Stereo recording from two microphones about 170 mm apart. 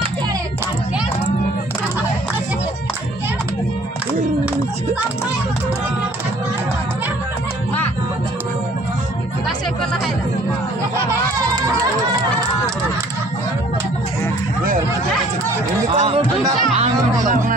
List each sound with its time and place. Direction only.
16.0 s chatter: 35° right (ahead or behind)
16.7 s music: 50° right (ahead or behind)